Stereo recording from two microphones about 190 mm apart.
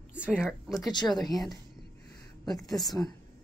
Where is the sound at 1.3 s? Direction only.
Centre (ahead or behind).